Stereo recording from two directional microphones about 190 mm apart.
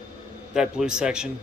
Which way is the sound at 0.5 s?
5° right (ahead or behind).